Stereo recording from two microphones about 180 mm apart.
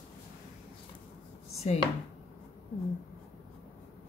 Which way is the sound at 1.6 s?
40° left (ahead or behind).